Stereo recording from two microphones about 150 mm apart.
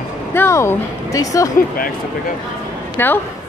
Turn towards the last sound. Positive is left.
turn(degrees=15)  # may be behind; listen again after turning